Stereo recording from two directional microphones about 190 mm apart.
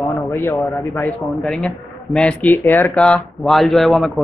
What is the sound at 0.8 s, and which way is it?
Speech, 15° left (ahead or behind).